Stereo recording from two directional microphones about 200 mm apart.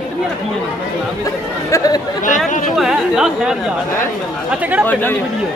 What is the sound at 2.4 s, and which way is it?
Speech, 40° left (ahead or behind).